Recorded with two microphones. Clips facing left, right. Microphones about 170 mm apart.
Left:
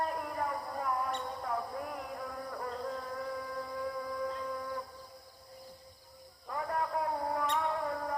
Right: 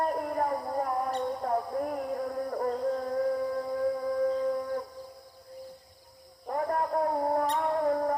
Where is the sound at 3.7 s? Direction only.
45° right (ahead or behind).